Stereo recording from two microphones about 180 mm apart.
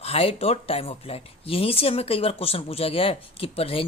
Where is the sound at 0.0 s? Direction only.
35° left (ahead or behind).